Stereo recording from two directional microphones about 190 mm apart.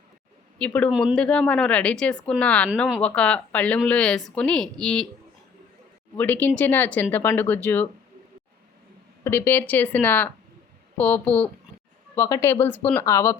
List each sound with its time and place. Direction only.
0.6 s a woman's voice: 5° left (ahead or behind)
6.1 s speech: 10° left (ahead or behind)
9.2 s speech: 10° left (ahead or behind)